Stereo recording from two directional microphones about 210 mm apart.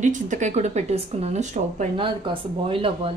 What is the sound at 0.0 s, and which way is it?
Speech, 35° right (ahead or behind).